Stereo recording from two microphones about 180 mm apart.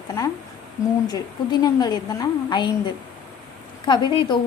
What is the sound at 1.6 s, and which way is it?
A woman's voice, 20° left (ahead or behind).